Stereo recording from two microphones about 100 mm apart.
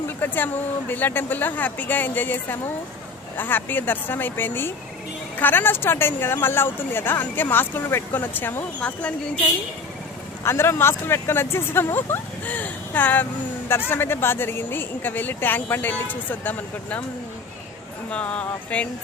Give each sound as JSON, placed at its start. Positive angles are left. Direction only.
{"t": 0.2, "sound": "speech", "side_deg": 20}
{"t": 10.4, "sound": "speech", "side_deg": 25}
{"t": 18.1, "sound": "a sound", "side_deg": 10}